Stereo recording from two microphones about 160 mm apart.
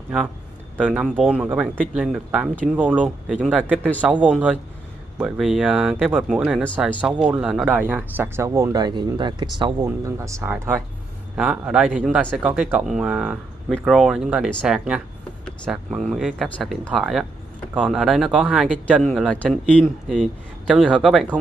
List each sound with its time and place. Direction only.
0.7 s a man's voice: 5° right (ahead or behind); by 9.8 s 30° right (ahead or behind)
9.8 s a man's voice: 20° right (ahead or behind); by 21.4 s centre (ahead or behind)